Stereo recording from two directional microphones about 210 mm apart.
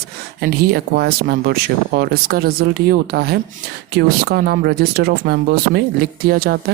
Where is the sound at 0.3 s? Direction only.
50° right (ahead or behind).